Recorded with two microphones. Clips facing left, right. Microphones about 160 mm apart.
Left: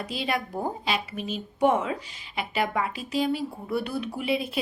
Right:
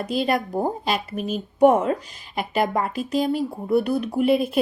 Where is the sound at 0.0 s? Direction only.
45° right (ahead or behind).